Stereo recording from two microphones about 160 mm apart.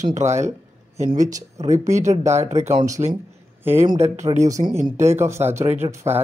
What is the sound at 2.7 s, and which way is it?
Speech, 20° right (ahead or behind).